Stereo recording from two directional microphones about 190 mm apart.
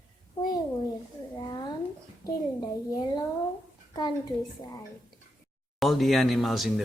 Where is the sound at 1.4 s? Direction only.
20° left (ahead or behind).